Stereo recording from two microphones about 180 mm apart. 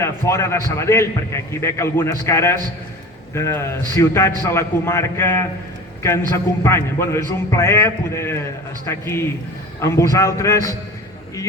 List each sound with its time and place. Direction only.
0.0 s a man's voice: 15° left (ahead or behind)